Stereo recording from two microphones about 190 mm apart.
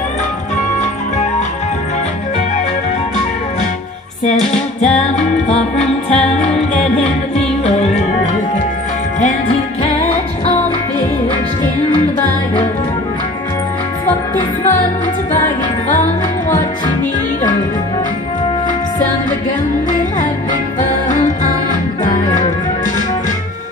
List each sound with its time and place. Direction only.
4.2 s music: 40° left (ahead or behind)
15.9 s music: 40° left (ahead or behind)
19.9 s music: 45° left (ahead or behind)